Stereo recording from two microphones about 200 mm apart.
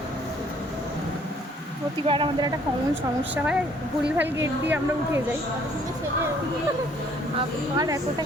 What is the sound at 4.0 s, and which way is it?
A woman's voice, 10° right (ahead or behind).